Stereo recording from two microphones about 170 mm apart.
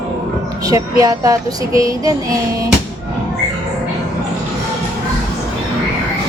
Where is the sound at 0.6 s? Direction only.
20° right (ahead or behind).